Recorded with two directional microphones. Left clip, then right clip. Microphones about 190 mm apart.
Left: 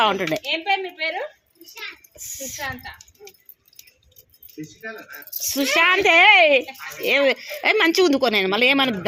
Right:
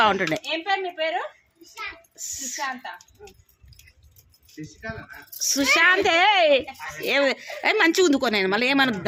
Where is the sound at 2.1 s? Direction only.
50° right (ahead or behind).